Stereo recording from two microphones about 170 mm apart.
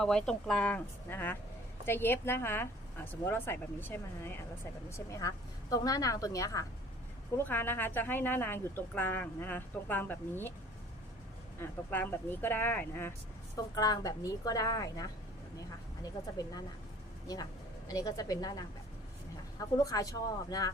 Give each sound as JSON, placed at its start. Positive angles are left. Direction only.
{"t": 0.0, "sound": "a woman's voice", "side_deg": 5}
{"t": 11.6, "sound": "speech", "side_deg": 10}
{"t": 13.7, "sound": "a woman's voice", "side_deg": 20}
{"t": 16.4, "sound": "a woman's voice", "side_deg": 20}
{"t": 17.8, "sound": "a woman's voice", "side_deg": 20}